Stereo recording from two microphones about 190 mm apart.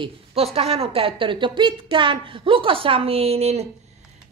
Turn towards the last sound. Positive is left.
turn(degrees=-35)  # may be behind; listen again after turning